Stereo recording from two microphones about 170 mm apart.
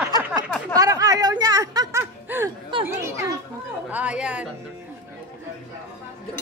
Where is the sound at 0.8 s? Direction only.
20° right (ahead or behind).